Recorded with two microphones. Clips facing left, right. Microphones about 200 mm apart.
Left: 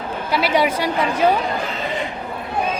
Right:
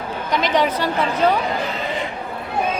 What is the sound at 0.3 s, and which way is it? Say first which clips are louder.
A woman's voice: left 1 dB; 10° left (ahead or behind).